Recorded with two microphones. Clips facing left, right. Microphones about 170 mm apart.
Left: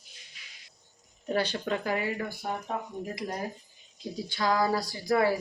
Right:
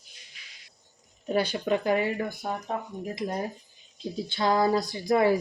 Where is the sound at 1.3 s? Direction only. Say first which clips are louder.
Right 3 dB; 15° right (ahead or behind).